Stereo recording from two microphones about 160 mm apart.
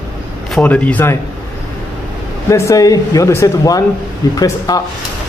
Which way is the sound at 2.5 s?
20° left (ahead or behind).